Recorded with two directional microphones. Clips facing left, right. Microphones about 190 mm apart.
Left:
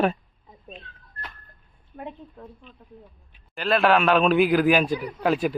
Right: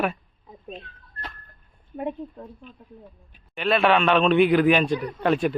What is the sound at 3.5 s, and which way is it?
A man's voice, centre (ahead or behind).